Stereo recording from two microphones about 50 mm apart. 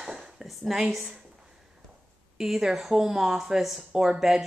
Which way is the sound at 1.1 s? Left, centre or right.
Centre.